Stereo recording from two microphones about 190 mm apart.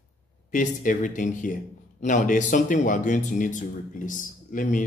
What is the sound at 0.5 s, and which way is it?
Speech, 45° left (ahead or behind).